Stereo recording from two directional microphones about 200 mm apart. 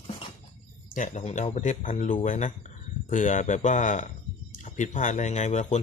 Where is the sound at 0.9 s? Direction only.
40° left (ahead or behind).